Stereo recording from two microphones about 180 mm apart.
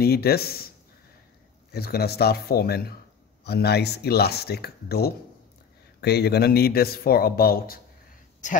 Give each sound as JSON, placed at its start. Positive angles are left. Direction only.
{"t": 0.0, "sound": "a man's voice", "side_deg": 60}
{"t": 8.4, "sound": "speech", "side_deg": 45}